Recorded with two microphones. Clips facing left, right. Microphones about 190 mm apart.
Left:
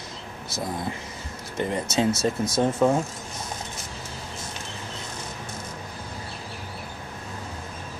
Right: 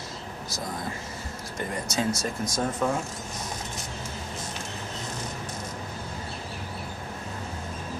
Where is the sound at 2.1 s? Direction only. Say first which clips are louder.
Left 5 dB; 5° left (ahead or behind).